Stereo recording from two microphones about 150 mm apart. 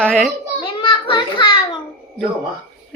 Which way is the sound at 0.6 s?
30° left (ahead or behind).